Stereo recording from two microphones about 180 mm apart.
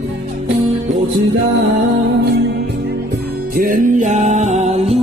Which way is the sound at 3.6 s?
50° right (ahead or behind).